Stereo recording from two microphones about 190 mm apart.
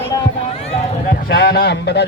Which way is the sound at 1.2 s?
65° left (ahead or behind).